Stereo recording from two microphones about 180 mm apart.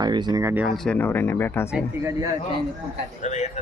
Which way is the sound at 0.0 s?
25° right (ahead or behind).